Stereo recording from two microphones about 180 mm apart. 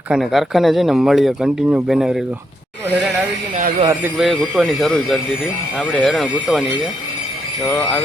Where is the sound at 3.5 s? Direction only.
40° right (ahead or behind).